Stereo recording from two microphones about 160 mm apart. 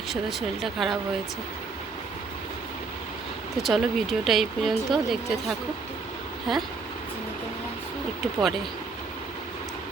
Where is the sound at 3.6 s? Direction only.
Centre (ahead or behind).